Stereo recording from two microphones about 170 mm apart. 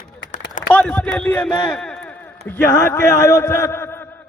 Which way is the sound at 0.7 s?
10° left (ahead or behind).